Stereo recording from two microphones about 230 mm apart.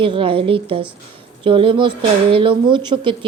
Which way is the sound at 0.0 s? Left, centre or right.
Right.